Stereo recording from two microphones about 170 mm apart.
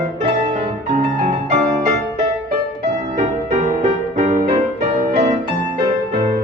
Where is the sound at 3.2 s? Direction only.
45° right (ahead or behind).